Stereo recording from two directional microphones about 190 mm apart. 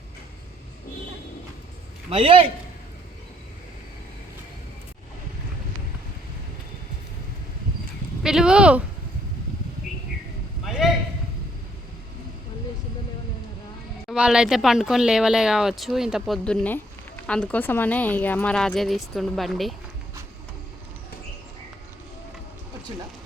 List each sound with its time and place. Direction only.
2.0 s a man's voice: 30° right (ahead or behind)
8.2 s speech: 5° right (ahead or behind)
14.1 s speech: 5° right (ahead or behind)